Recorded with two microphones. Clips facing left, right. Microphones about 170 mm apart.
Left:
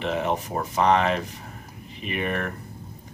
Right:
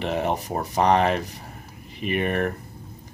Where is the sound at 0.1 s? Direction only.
40° right (ahead or behind).